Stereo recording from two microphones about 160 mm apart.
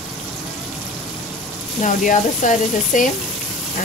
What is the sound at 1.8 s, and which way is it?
Speech, 55° left (ahead or behind).